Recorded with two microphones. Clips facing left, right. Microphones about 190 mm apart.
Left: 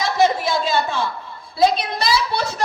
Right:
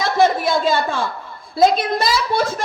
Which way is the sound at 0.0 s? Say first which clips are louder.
Right 2 dB; 50° right (ahead or behind).